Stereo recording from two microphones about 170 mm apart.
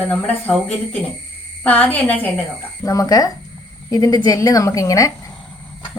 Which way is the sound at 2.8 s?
20° left (ahead or behind).